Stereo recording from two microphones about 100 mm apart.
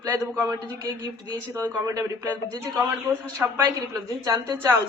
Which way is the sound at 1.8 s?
30° right (ahead or behind).